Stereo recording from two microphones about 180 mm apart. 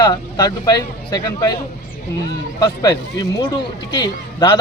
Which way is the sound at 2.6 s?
20° left (ahead or behind).